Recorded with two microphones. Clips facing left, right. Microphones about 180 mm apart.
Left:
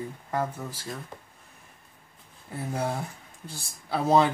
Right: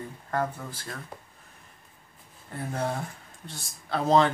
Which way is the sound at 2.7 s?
10° left (ahead or behind).